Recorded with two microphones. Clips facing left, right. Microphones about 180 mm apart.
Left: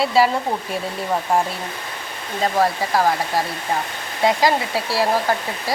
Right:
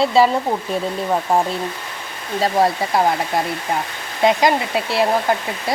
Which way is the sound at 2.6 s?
25° right (ahead or behind).